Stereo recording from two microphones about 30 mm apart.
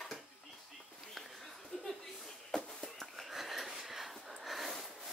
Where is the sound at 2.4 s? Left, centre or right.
Centre.